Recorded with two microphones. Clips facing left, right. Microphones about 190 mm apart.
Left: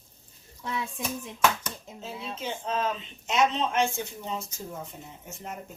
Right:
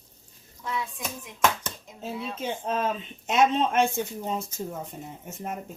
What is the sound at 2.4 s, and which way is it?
Speech, 50° right (ahead or behind).